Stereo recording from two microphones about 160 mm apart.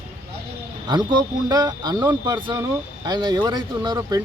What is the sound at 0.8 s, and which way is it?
A man's voice, 25° right (ahead or behind).